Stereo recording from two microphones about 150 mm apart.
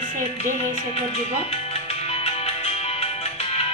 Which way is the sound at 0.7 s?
40° left (ahead or behind).